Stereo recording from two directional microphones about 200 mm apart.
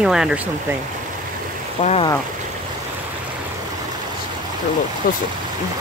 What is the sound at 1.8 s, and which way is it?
Speech, 35° left (ahead or behind).